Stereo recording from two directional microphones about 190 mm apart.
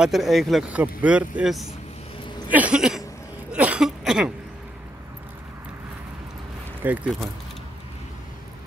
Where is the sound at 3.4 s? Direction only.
5° right (ahead or behind).